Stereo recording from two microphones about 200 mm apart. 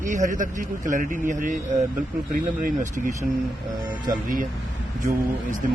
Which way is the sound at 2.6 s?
40° right (ahead or behind).